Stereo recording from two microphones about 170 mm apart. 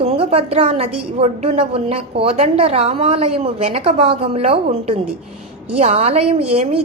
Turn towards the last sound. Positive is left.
turn(degrees=-35)  # may be behind; listen again after turning